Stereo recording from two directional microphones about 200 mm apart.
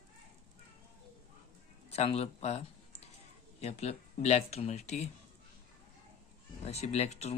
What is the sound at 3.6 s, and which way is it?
Speech, 30° left (ahead or behind).